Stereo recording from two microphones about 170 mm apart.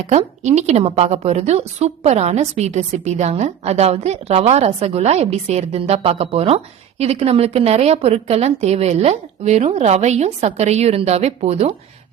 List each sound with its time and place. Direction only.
0.0 s a woman's voice: 40° right (ahead or behind)